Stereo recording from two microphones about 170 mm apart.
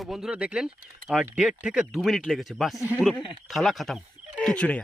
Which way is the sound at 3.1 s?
Centre (ahead or behind).